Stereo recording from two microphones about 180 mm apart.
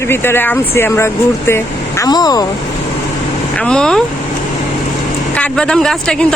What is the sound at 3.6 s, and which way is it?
Speech, 5° left (ahead or behind).